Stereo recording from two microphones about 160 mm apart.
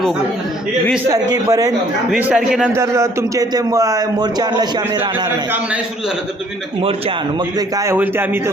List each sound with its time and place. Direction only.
1.0 s a man's voice: 20° right (ahead or behind)
2.0 s a man's voice: 5° right (ahead or behind)
2.7 s a man's voice: 20° right (ahead or behind)